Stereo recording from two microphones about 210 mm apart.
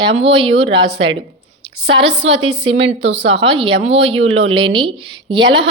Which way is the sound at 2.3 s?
30° right (ahead or behind).